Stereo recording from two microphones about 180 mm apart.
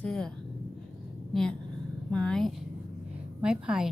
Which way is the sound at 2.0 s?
5° left (ahead or behind).